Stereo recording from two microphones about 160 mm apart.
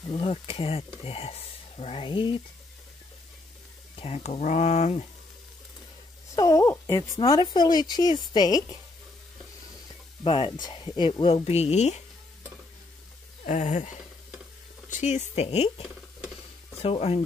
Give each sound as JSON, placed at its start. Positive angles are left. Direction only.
{"t": 0.1, "sound": "speech", "side_deg": 35}
{"t": 4.0, "sound": "speech", "side_deg": 40}
{"t": 6.3, "sound": "speech", "side_deg": 20}
{"t": 10.2, "sound": "speech", "side_deg": 30}
{"t": 13.5, "sound": "speech", "side_deg": 50}
{"t": 14.9, "sound": "speech", "side_deg": 45}
{"t": 16.8, "sound": "speech", "side_deg": 35}